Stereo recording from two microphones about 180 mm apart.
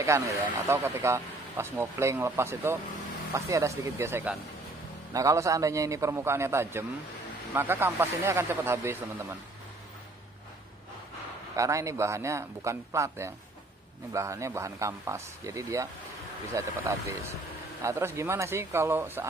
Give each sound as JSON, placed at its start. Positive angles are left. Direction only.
{"t": 0.0, "sound": "speech", "side_deg": -15}
{"t": 11.5, "sound": "speech", "side_deg": -15}